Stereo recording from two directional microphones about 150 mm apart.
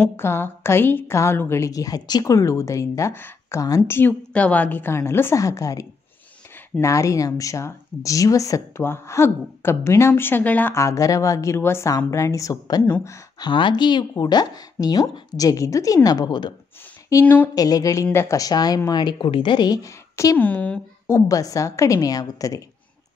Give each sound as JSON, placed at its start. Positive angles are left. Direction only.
{"t": 0.0, "sound": "a woman's voice", "side_deg": 15}
{"t": 13.5, "sound": "speech", "side_deg": 30}
{"t": 17.1, "sound": "a woman's voice", "side_deg": 15}
{"t": 21.3, "sound": "speech", "side_deg": 25}